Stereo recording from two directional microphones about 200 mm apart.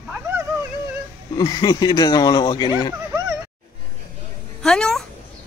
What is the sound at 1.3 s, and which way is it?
Speech, 20° left (ahead or behind).